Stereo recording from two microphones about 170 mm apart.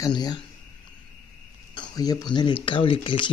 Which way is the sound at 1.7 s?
20° left (ahead or behind).